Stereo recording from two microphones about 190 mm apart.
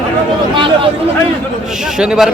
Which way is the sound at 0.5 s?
25° right (ahead or behind).